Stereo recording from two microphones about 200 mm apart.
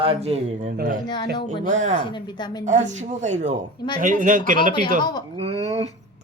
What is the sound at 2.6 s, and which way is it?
Speech, 35° right (ahead or behind).